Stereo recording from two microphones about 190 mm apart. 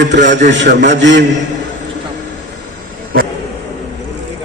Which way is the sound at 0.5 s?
65° right (ahead or behind).